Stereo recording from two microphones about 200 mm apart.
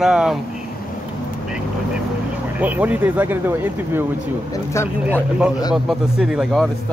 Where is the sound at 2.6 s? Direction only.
10° right (ahead or behind).